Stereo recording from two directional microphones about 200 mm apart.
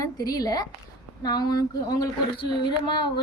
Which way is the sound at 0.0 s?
20° left (ahead or behind).